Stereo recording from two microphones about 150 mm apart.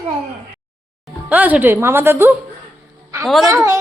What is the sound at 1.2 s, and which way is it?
Speech, 10° right (ahead or behind).